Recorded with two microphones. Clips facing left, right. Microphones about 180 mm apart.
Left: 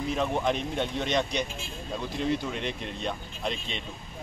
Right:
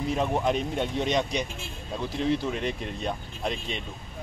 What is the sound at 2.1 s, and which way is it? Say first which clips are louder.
Speech: right 3 dB; centre (ahead or behind).